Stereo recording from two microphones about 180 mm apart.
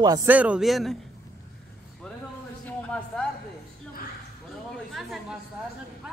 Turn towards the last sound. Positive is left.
turn(degrees=0)  # may be behind; listen again after turning